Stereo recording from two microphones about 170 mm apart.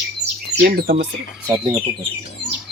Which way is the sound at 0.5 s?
60° right (ahead or behind).